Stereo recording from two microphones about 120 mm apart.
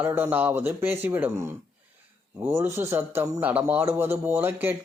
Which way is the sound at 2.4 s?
20° right (ahead or behind).